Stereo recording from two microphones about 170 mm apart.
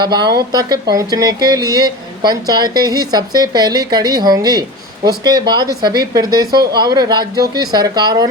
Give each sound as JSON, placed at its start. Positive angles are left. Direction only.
{"t": 0.0, "sound": "speech", "side_deg": -25}